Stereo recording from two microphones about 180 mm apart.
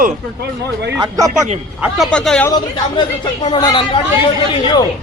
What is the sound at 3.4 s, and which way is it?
A woman's voice, 25° left (ahead or behind).